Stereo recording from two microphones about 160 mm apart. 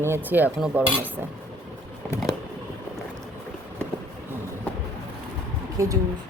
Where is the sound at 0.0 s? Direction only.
15° right (ahead or behind).